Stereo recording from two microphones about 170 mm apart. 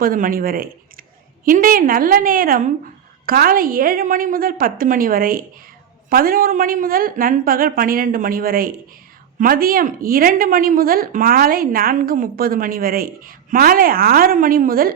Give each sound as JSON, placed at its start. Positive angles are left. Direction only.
{"t": 0.0, "sound": "a woman's voice", "side_deg": -55}